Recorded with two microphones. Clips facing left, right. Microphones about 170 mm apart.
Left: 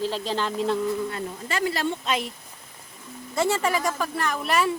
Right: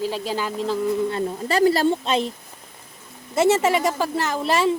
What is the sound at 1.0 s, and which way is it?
Speech, 30° right (ahead or behind).